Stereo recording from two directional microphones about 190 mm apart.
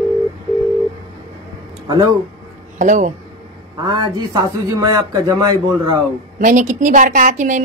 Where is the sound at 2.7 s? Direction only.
40° right (ahead or behind).